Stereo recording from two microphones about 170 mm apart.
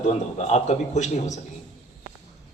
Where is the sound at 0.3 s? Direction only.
40° left (ahead or behind).